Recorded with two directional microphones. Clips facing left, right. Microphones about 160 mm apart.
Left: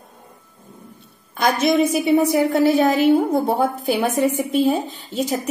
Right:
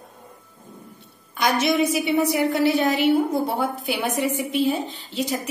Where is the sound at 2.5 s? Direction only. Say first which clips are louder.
Left 4 dB; 50° left (ahead or behind).